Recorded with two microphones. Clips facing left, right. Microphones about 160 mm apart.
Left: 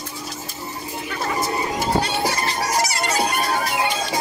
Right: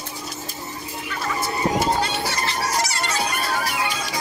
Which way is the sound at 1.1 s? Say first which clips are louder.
Left 2 dB; 35° left (ahead or behind).